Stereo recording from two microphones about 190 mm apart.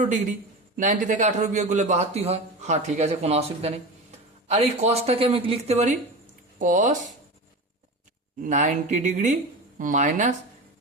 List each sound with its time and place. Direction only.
0.0 s a man's voice: 45° right (ahead or behind)
8.4 s speech: 40° right (ahead or behind)